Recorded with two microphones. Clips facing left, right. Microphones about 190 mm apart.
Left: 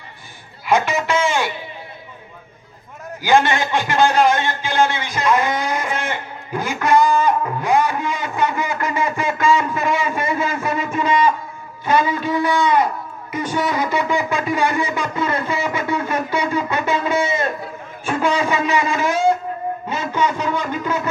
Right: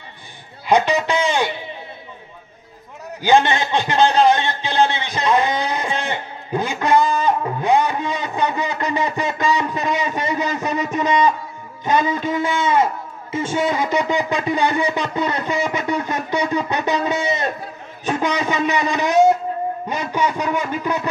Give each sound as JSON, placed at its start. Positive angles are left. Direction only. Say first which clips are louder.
{"t": 0.7, "sound": "a man's voice", "louder": "right 1 dB", "side_deg": -20}
{"t": 3.2, "sound": "a man's voice", "louder": "even", "side_deg": -20}
{"t": 18.0, "sound": "a sound", "louder": "left 1 dB", "side_deg": -20}
{"t": 19.9, "sound": "speech", "louder": "left 2 dB", "side_deg": -15}